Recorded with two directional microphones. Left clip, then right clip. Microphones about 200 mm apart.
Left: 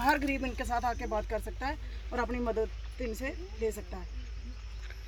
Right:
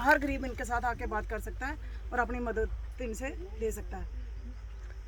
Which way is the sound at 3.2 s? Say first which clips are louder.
Left 1 dB; 15° left (ahead or behind).